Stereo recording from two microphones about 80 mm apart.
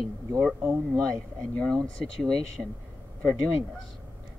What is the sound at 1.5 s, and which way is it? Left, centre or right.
Speech, centre.